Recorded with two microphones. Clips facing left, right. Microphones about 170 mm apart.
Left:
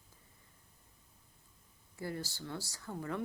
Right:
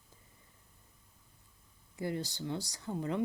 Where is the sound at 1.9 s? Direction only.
20° right (ahead or behind).